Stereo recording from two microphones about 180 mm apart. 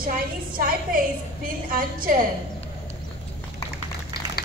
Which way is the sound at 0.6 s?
50° right (ahead or behind).